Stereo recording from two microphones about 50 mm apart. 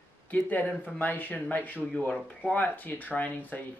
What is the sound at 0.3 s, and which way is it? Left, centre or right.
Speech, left.